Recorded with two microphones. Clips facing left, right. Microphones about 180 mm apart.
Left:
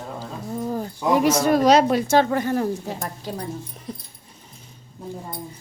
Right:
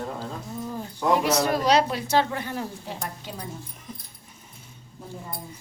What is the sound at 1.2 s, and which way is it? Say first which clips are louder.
A woman's voice: left 5 dB; 45° left (ahead or behind).